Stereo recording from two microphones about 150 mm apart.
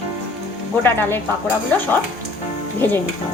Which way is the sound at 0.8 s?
15° left (ahead or behind).